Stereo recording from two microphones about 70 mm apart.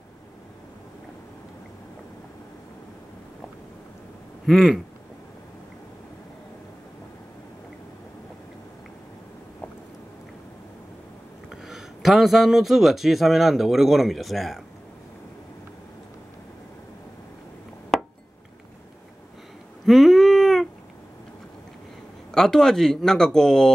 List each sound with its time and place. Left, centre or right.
4.5 s a man's voice: centre
11.6 s a man's voice: centre
17.9 s a sound: centre
19.9 s cat: centre
22.3 s speech: centre